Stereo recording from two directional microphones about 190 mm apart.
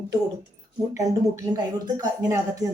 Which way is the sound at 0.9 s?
15° right (ahead or behind).